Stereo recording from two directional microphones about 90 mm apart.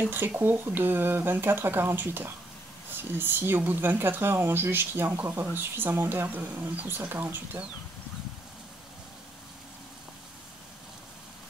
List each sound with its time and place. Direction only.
0.4 s speech: 25° right (ahead or behind)